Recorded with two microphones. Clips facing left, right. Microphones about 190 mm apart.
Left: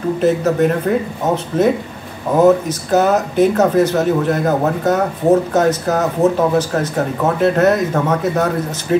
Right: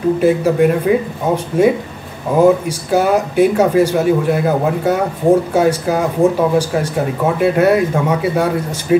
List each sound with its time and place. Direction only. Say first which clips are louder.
0.2 s speech: even; 10° right (ahead or behind)